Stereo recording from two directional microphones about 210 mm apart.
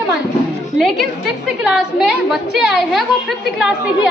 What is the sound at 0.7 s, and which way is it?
A woman's voice, centre (ahead or behind).